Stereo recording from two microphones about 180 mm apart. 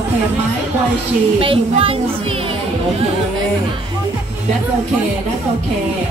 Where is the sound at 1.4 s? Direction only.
30° right (ahead or behind).